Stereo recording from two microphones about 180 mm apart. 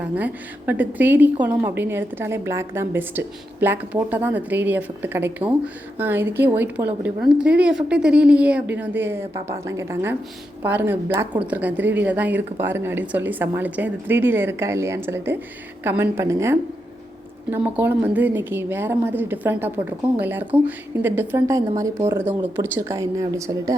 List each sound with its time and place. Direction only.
0.0 s a woman's voice: 10° right (ahead or behind)